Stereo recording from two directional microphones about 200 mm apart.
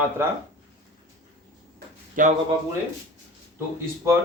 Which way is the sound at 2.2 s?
40° right (ahead or behind).